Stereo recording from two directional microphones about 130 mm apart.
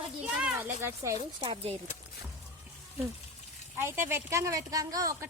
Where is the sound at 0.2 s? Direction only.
10° right (ahead or behind).